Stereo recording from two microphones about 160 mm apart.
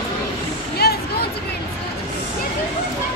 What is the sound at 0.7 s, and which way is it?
Music, 80° left.